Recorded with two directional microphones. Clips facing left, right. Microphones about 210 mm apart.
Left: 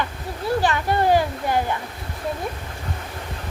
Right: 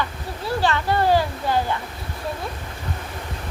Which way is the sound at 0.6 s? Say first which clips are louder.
Right 2 dB; 20° left (ahead or behind).